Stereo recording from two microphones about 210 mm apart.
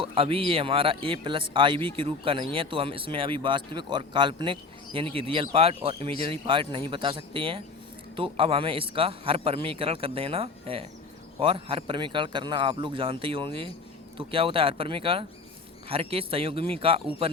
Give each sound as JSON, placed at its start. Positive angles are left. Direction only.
{"t": 0.0, "sound": "speech", "side_deg": -25}